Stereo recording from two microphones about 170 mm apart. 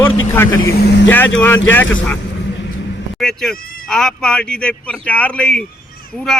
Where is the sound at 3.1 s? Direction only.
5° left (ahead or behind).